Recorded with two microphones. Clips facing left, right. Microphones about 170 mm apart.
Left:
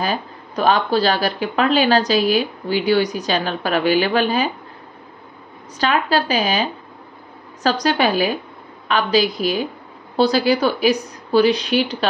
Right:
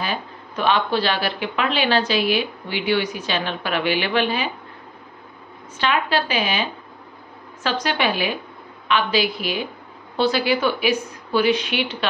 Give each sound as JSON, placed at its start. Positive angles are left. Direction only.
{"t": 0.0, "sound": "speech", "side_deg": 40}
{"t": 5.8, "sound": "speech", "side_deg": 40}